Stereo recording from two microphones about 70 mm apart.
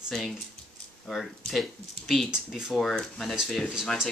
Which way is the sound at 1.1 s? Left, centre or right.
Centre.